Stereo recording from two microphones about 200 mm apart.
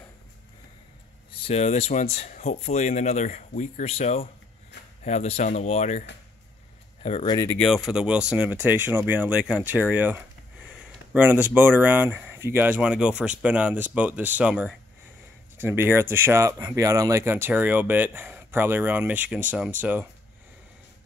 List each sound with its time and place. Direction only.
1.4 s speech: 30° left (ahead or behind)
7.3 s speech: 10° left (ahead or behind); by 20.1 s 5° right (ahead or behind)